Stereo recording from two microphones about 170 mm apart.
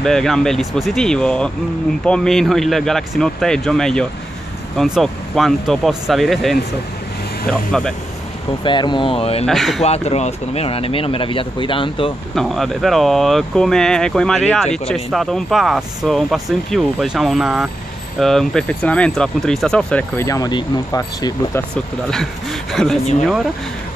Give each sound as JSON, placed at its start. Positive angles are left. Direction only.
{"t": 0.0, "sound": "speech", "side_deg": 5}
{"t": 8.6, "sound": "speech", "side_deg": 25}
{"t": 9.5, "sound": "speech", "side_deg": 0}
{"t": 9.8, "sound": "speech", "side_deg": 40}
{"t": 12.4, "sound": "speech", "side_deg": 0}
{"t": 20.2, "sound": "speech", "side_deg": 20}
{"t": 22.1, "sound": "speech", "side_deg": 0}